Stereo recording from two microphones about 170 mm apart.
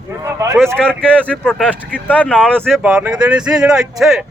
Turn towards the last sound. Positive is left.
turn(degrees=0)  # may be behind; listen again after turning